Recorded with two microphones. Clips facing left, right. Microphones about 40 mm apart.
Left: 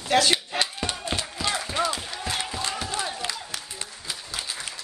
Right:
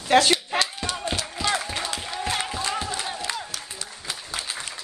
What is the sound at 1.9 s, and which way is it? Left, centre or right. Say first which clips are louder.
Music: right 2 dB; right.